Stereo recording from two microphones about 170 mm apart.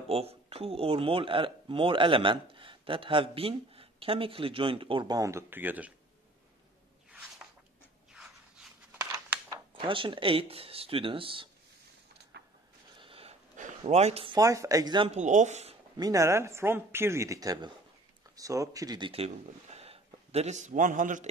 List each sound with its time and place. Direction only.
0.1 s speech: 35° right (ahead or behind); by 5.9 s 10° right (ahead or behind)
9.5 s speech: 30° right (ahead or behind)
12.3 s vehicle: 85° right
13.0 s a sound: 35° right (ahead or behind)
13.6 s speech: 40° right (ahead or behind); by 15.0 s 25° right (ahead or behind)
15.0 s speech: 45° right (ahead or behind)
16.0 s speech: 20° right (ahead or behind); by 21.3 s 50° right (ahead or behind)